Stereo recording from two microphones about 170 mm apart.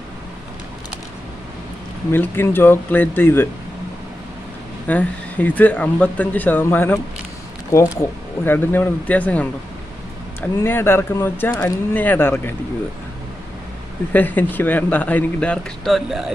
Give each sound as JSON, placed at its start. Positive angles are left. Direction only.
{"t": 2.1, "sound": "speech", "side_deg": 15}
{"t": 4.8, "sound": "speech", "side_deg": 10}
{"t": 10.6, "sound": "speech", "side_deg": 15}
{"t": 14.1, "sound": "speech", "side_deg": 10}